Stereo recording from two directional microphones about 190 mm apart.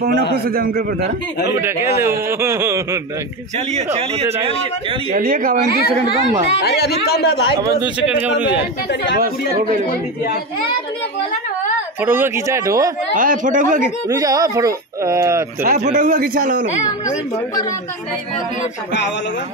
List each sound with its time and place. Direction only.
0.5 s a man's voice: 50° right (ahead or behind)
1.5 s speech: 15° right (ahead or behind)
3.5 s a man's voice: 35° right (ahead or behind)
5.1 s a man's voice: 50° right (ahead or behind)
6.6 s speech: 60° left (ahead or behind)
7.6 s speech: 5° right (ahead or behind)
12.0 s speech: 10° right (ahead or behind)
13.1 s a man's voice: 45° right (ahead or behind)
14.0 s speech: 20° right (ahead or behind)
15.6 s a man's voice: 40° right (ahead or behind)